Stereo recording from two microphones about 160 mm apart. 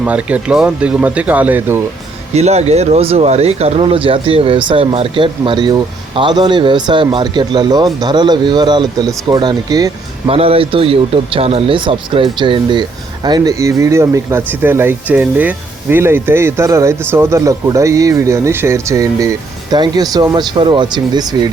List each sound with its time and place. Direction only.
0.0 s speech: 10° right (ahead or behind)
2.3 s speech: 40° right (ahead or behind); by 9.9 s 25° right (ahead or behind)
10.2 s speech: 35° right (ahead or behind)